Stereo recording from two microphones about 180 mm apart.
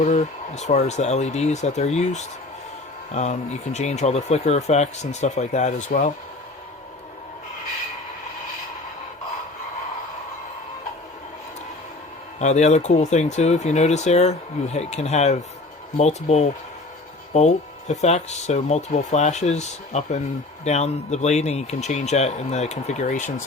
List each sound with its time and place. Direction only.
0.0 s speech: 40° left (ahead or behind)
12.4 s speech: 40° left (ahead or behind)